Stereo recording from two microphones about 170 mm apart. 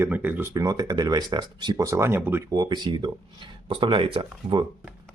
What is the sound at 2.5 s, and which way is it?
Speech, 25° right (ahead or behind).